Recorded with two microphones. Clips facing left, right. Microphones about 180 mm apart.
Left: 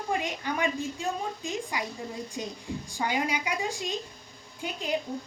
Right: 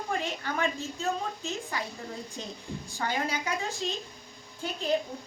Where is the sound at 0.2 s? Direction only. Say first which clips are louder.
Left 1 dB; 15° left (ahead or behind).